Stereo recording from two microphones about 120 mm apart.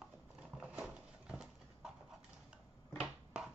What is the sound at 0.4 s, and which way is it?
Horse, 5° right (ahead or behind).